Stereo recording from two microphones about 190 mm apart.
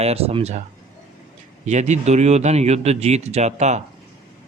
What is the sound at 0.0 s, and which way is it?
Speech, 30° right (ahead or behind).